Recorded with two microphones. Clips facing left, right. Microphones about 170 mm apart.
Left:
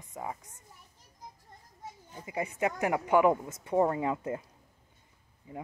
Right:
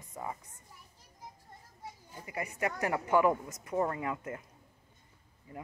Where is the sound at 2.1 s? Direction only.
20° left (ahead or behind).